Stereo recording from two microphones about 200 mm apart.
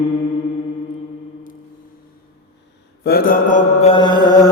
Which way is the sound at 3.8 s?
25° left (ahead or behind).